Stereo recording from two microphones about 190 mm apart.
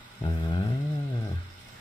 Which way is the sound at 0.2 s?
25° left (ahead or behind).